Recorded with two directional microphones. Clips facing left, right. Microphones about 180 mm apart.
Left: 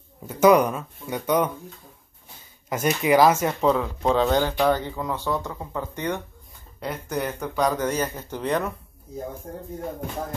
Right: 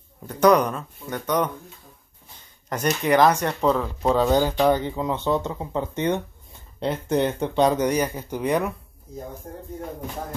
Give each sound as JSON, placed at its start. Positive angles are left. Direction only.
{"t": 0.3, "sound": "speech", "side_deg": 5}
{"t": 2.7, "sound": "speech", "side_deg": 5}